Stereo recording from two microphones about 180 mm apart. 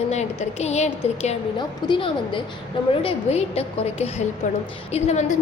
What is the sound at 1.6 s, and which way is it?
A woman's voice, 25° left (ahead or behind).